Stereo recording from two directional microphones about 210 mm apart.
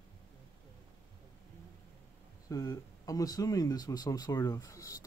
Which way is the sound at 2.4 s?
15° left (ahead or behind).